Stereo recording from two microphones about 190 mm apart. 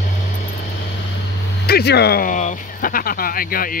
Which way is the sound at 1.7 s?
55° left (ahead or behind).